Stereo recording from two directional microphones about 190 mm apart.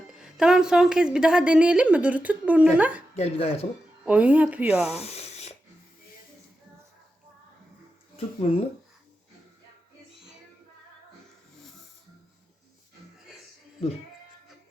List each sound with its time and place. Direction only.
0.1 s speech: 5° right (ahead or behind)
3.2 s chopping: 30° left (ahead or behind)
4.0 s speech: 5° right (ahead or behind)
4.9 s a sound: 35° left (ahead or behind)
8.1 s speech: 30° left (ahead or behind)